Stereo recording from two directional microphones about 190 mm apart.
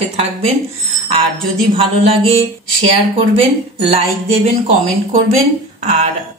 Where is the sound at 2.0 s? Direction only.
30° right (ahead or behind).